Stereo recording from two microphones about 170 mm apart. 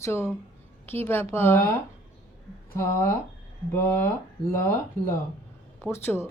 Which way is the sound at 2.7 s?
15° left (ahead or behind).